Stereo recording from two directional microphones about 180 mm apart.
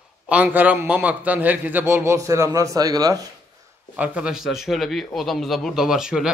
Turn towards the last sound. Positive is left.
turn(degrees=-5)  # may be behind; listen again after turning